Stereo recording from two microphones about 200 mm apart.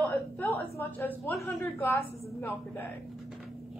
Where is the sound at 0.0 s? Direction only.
10° left (ahead or behind).